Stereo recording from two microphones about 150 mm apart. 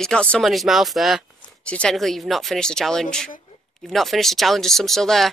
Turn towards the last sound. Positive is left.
turn(degrees=0)  # may be behind; listen again after turning